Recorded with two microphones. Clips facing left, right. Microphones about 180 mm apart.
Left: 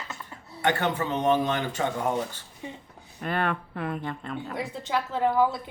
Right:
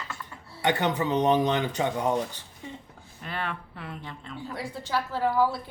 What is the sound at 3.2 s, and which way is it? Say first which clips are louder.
Speech: left 6 dB; 55° left (ahead or behind).